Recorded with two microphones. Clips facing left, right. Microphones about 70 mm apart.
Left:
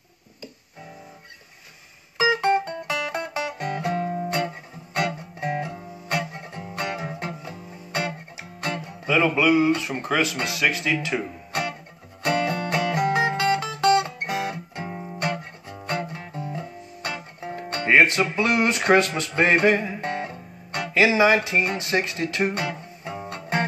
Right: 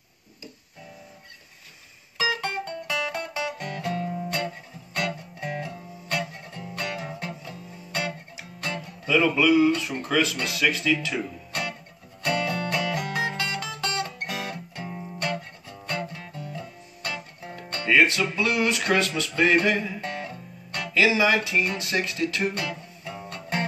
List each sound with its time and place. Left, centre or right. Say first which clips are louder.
2.1 s music: left 7 dB; left
4.9 s guitar: left 3 dB; left
8.7 s speech: even; left
12.2 s music: left 3 dB; left
20.9 s speech: left 3 dB; left